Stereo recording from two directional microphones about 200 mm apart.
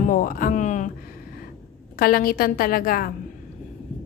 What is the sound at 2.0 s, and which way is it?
Speech, 50° left (ahead or behind).